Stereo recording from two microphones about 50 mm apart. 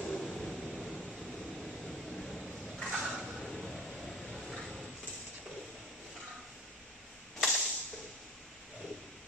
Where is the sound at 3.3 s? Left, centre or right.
Centre.